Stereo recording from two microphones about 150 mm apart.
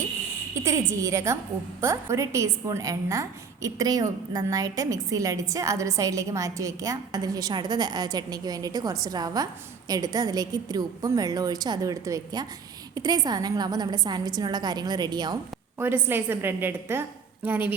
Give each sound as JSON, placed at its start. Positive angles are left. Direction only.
{"t": 0.5, "sound": "a woman's voice", "side_deg": -20}
{"t": 16.0, "sound": "a woman's voice", "side_deg": -15}